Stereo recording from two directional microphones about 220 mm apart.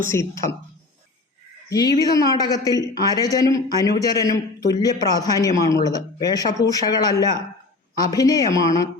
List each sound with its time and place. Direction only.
0.1 s a man's voice: 15° left (ahead or behind)
1.7 s a man's voice: 15° left (ahead or behind)